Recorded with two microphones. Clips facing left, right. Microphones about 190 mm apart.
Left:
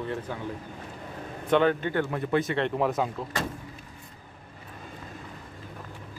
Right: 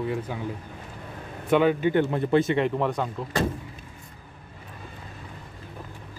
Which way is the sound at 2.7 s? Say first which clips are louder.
Even; 5° left (ahead or behind).